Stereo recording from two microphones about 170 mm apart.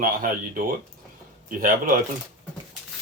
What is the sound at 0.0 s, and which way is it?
Speech, 55° right (ahead or behind).